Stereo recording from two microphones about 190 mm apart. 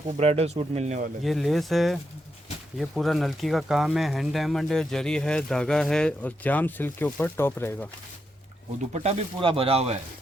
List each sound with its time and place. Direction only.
0.2 s speech: 35° right (ahead or behind)
1.2 s speech: centre (ahead or behind)
8.9 s speech: 30° right (ahead or behind)